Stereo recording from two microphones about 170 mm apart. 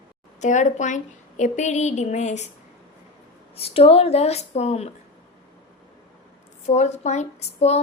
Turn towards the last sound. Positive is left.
turn(degrees=40)  # may be behind; listen again after turning